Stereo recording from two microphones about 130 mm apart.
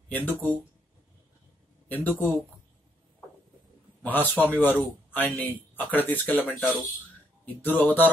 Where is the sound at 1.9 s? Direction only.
15° left (ahead or behind).